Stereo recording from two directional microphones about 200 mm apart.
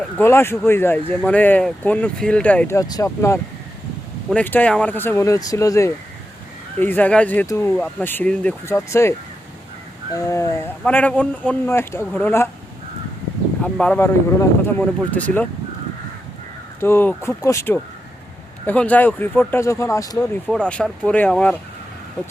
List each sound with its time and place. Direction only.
0.2 s speech: 10° left (ahead or behind)
10.2 s speech: 15° left (ahead or behind)
13.6 s speech: 5° left (ahead or behind)
16.8 s speech: 10° left (ahead or behind)
20.5 s speech: 5° left (ahead or behind)